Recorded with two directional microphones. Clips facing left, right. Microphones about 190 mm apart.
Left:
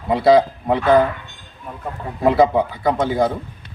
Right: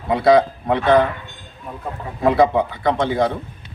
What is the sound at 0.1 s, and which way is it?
Speech, centre (ahead or behind).